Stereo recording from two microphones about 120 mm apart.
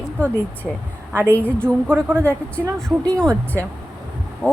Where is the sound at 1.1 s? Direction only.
20° right (ahead or behind).